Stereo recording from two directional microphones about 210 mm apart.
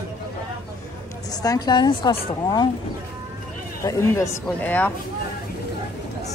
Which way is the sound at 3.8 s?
10° left (ahead or behind).